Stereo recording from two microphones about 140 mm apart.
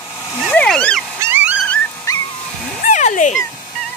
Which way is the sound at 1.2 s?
15° right (ahead or behind).